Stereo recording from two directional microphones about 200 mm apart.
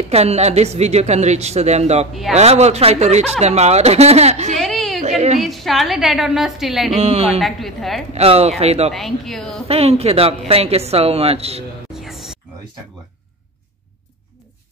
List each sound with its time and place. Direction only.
0.1 s speech: 30° right (ahead or behind)
4.6 s a sound: centre (ahead or behind)
5.0 s a sound: 35° right (ahead or behind)
5.4 s a woman's voice: centre (ahead or behind)
6.9 s speech: 30° right (ahead or behind)
7.3 s a woman's voice: centre (ahead or behind)
8.1 s speech: 30° right (ahead or behind)
8.9 s a woman's voice: centre (ahead or behind)
9.7 s speech: 30° right (ahead or behind)
11.9 s music: centre (ahead or behind)